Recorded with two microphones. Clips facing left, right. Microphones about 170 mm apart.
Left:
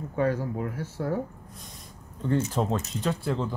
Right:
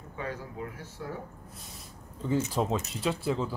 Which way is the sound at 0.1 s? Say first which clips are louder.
Left 11 dB; 45° left (ahead or behind).